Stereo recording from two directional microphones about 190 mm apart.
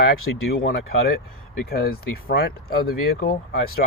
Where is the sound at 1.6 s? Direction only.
55° left (ahead or behind).